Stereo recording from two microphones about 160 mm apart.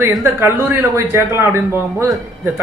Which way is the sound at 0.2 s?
15° right (ahead or behind).